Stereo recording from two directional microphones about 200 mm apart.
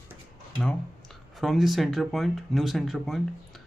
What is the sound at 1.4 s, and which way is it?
Speech, centre (ahead or behind).